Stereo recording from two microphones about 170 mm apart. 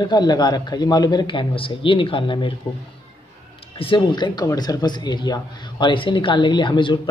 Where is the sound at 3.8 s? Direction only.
30° left (ahead or behind).